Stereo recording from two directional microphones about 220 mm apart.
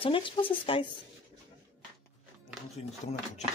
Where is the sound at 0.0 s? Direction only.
25° left (ahead or behind).